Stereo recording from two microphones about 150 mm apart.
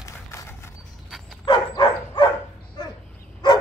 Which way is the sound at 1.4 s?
30° left (ahead or behind).